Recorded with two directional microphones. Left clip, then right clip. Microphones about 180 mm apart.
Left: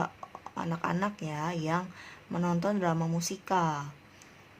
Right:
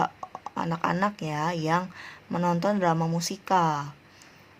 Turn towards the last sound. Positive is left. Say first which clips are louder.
# right 6 dB
turn(degrees=-20)  # may be behind; listen again after turning